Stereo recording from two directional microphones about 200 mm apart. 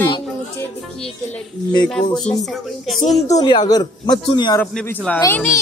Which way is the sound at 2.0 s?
25° left (ahead or behind).